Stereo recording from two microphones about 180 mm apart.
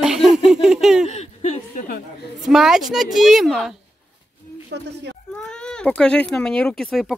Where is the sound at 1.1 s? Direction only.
35° left (ahead or behind); by 2.3 s 55° left (ahead or behind).